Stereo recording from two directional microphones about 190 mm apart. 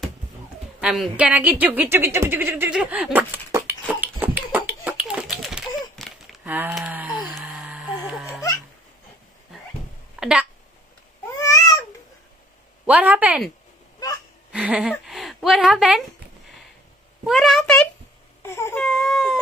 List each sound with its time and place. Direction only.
0.7 s a sound: centre (ahead or behind)
10.2 s a sound: 5° right (ahead or behind)
11.3 s babbling: 15° left (ahead or behind)
12.8 s speech: 5° right (ahead or behind)
14.0 s hiccup: 20° left (ahead or behind)
14.5 s a woman's voice: 5° right (ahead or behind)
17.3 s a sound: centre (ahead or behind)
18.4 s crying: 15° left (ahead or behind)
18.9 s baby cry: centre (ahead or behind)